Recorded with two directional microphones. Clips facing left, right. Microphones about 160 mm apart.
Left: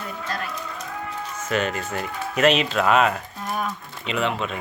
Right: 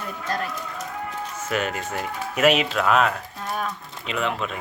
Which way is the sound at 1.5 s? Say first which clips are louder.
Left 2 dB; 5° right (ahead or behind).